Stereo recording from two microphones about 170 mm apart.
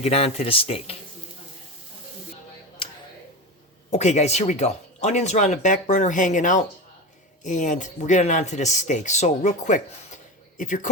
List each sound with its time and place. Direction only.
0.0 s speech: 35° left (ahead or behind)
3.8 s speech: 40° left (ahead or behind)